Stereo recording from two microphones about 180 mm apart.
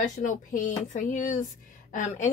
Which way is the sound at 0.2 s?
45° left (ahead or behind).